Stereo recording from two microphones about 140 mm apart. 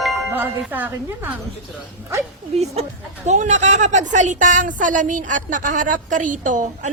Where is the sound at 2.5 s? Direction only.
50° right (ahead or behind).